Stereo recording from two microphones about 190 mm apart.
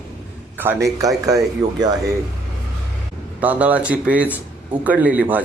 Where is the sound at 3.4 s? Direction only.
10° right (ahead or behind).